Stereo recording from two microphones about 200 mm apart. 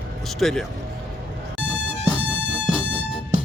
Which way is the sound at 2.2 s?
65° right (ahead or behind).